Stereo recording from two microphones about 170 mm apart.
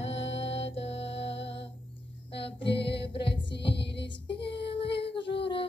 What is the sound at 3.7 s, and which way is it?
Music, 85° left.